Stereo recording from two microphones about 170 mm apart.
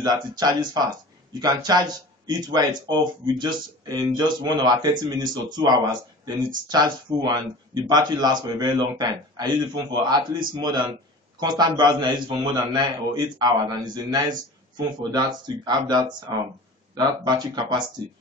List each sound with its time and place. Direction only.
0.0 s speech: 25° right (ahead or behind)